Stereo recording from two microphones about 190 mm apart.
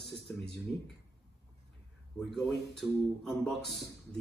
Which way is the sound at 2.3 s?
Centre (ahead or behind).